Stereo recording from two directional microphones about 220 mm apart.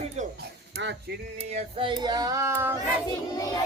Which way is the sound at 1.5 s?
20° right (ahead or behind).